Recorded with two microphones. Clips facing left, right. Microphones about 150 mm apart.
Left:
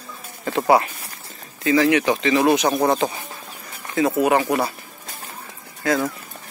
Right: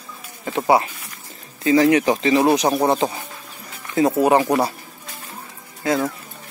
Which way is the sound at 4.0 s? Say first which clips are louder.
Right 2 dB; 35° right (ahead or behind).